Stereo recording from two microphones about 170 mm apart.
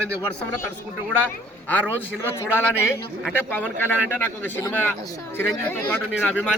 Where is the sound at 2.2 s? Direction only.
15° left (ahead or behind).